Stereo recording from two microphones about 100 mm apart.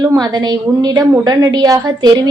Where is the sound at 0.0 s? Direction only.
30° right (ahead or behind).